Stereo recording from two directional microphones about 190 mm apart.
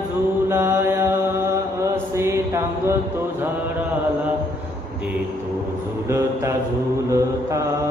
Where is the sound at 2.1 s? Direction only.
15° right (ahead or behind).